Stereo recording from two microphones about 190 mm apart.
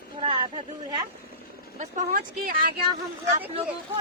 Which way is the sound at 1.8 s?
50° right (ahead or behind).